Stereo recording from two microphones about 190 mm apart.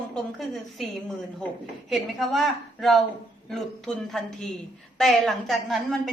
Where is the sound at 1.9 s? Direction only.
Centre (ahead or behind).